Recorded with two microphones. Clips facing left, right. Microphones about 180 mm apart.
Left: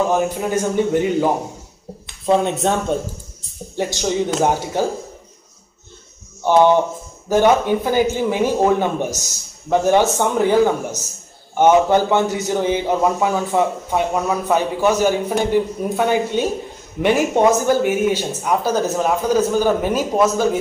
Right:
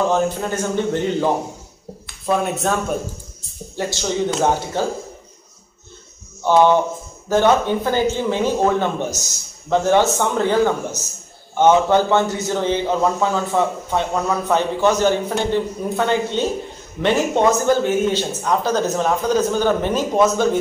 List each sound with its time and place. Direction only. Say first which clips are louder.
0.1 s a man's voice: left 1 dB; 10° left (ahead or behind)
2.0 s a man's voice: left 3 dB; 25° left (ahead or behind)
6.4 s a man's voice: left 1 dB; 15° left (ahead or behind)